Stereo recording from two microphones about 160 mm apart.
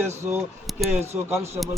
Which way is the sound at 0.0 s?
15° right (ahead or behind).